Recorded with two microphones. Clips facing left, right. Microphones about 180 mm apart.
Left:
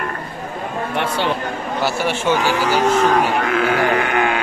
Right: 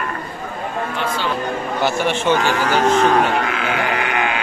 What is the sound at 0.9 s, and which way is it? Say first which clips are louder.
Speech: left 5 dB; 65° left (ahead or behind).